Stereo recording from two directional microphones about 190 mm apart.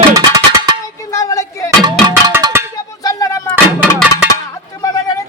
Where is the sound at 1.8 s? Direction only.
25° right (ahead or behind).